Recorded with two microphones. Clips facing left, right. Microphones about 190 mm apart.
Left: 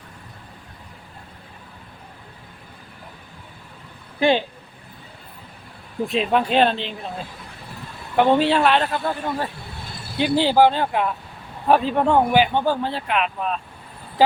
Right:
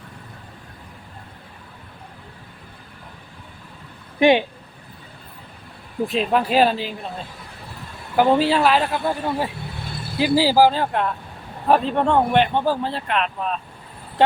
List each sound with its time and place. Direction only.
4.2 s speech: 15° right (ahead or behind)
6.1 s speech: centre (ahead or behind)
8.1 s speech: 5° right (ahead or behind)